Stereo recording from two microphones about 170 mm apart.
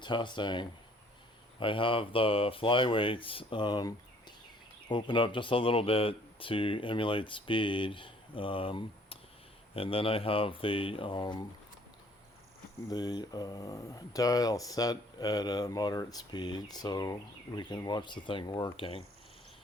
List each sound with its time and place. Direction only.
0.0 s speech: 25° left (ahead or behind)
12.9 s speech: 25° left (ahead or behind)